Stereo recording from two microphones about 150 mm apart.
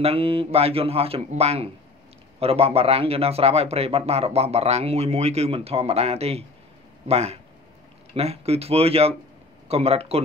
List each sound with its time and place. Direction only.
0.0 s speech: 40° right (ahead or behind)